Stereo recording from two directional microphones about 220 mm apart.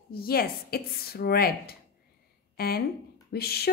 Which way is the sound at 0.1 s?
45° left (ahead or behind).